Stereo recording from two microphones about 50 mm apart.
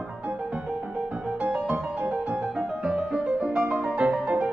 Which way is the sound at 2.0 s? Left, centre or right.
Right.